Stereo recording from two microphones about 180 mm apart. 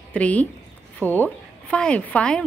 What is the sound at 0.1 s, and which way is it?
A woman's voice, 10° left (ahead or behind).